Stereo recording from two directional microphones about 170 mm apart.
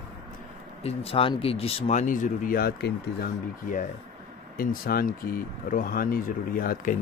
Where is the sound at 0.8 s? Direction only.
35° left (ahead or behind).